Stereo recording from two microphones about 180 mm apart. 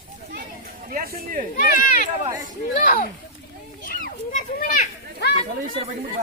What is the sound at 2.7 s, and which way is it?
Speech, 45° left (ahead or behind).